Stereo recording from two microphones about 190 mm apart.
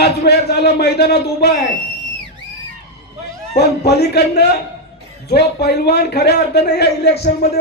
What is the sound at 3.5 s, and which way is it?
A man's voice, 55° left (ahead or behind).